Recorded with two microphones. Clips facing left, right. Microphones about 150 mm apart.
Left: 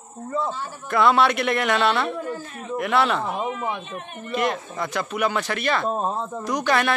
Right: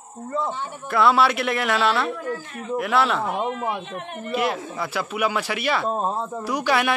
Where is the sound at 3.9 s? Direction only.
80° right.